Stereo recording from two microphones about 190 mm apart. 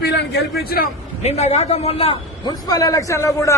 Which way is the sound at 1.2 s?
35° left (ahead or behind).